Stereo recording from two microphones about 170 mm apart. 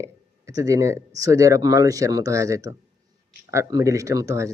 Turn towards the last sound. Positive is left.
turn(degrees=-20)  # may be behind; listen again after turning